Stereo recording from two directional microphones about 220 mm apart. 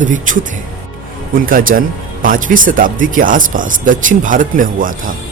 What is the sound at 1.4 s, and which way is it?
Speech, 40° right (ahead or behind).